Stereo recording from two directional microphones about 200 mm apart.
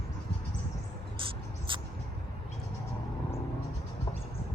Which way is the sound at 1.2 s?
25° right (ahead or behind).